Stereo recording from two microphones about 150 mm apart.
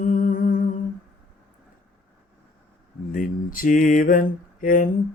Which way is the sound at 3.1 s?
65° left (ahead or behind).